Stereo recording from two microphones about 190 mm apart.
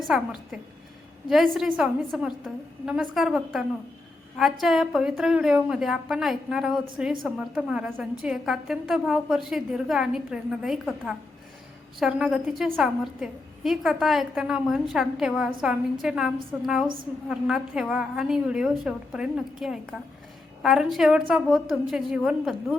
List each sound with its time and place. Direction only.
0.1 s a woman's voice: centre (ahead or behind)